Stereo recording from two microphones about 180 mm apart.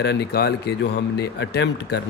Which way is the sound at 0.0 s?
70° left (ahead or behind).